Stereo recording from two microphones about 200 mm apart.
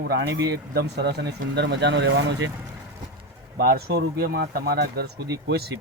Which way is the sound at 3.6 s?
50° right (ahead or behind).